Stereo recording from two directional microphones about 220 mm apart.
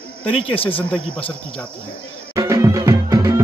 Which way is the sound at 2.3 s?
15° right (ahead or behind).